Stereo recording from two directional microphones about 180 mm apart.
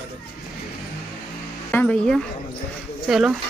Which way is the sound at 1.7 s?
5° left (ahead or behind).